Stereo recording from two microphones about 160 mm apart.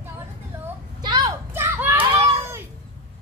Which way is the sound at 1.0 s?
25° right (ahead or behind).